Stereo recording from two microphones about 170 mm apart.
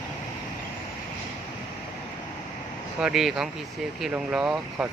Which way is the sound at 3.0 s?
5° right (ahead or behind).